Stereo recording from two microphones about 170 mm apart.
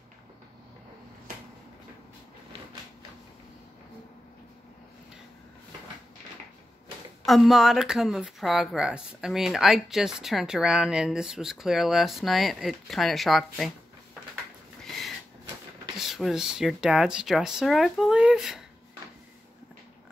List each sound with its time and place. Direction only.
7.2 s speech: centre (ahead or behind)
14.8 s a sound: centre (ahead or behind)
16.0 s speech: centre (ahead or behind)